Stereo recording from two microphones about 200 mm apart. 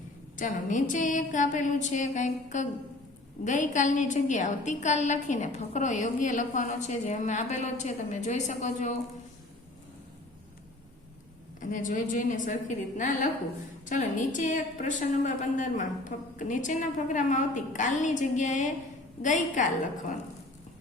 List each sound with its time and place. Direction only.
0.3 s a woman's voice: 40° left (ahead or behind)
11.6 s a woman's voice: 40° left (ahead or behind)